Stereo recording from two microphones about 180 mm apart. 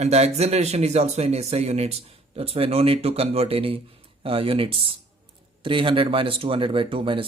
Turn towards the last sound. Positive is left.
turn(degrees=-30)  # may be behind; listen again after turning